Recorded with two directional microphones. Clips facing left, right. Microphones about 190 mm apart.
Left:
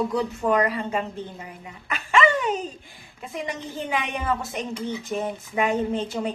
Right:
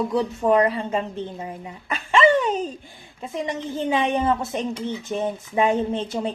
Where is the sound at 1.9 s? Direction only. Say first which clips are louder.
Right 3 dB; 30° right (ahead or behind).